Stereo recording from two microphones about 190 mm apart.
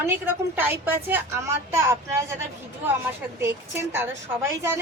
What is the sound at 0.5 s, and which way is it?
A woman's voice, 10° right (ahead or behind).